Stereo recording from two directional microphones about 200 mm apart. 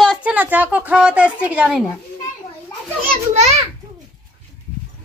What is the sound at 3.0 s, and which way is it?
Speech, 35° right (ahead or behind).